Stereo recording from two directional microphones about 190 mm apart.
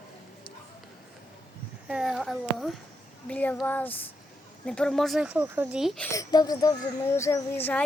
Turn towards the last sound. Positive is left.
turn(degrees=10)  # may be behind; listen again after turning